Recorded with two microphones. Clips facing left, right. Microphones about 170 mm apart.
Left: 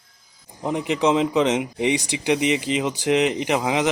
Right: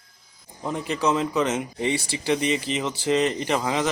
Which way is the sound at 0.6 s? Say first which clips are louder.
Left 4 dB; 20° left (ahead or behind).